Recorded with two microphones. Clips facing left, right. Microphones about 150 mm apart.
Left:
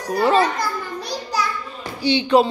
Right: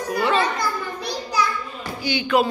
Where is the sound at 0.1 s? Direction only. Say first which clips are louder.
Left 4 dB; 40° left (ahead or behind).